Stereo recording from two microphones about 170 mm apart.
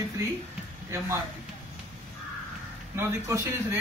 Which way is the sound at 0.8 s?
15° right (ahead or behind).